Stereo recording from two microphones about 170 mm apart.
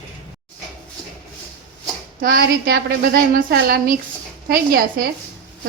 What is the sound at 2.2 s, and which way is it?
Speech, 60° right (ahead or behind).